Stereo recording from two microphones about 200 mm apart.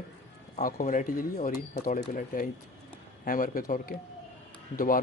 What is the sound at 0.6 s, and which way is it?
Speech, 45° left (ahead or behind).